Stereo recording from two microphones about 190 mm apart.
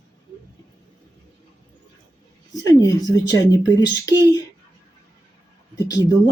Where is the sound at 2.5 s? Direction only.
20° left (ahead or behind).